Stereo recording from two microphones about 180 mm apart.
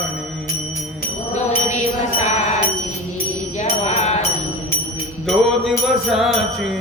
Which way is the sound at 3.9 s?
40° left (ahead or behind).